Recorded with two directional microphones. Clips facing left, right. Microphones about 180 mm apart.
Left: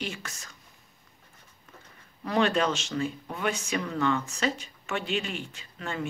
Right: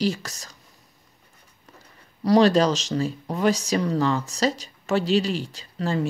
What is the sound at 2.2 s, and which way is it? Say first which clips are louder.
Speech: right 8 dB; 35° right (ahead or behind).